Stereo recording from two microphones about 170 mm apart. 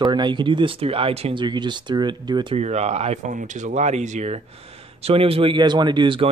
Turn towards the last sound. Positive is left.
turn(degrees=-30)  # may be behind; listen again after turning